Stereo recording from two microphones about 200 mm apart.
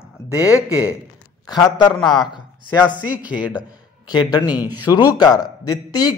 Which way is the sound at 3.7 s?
20° left (ahead or behind).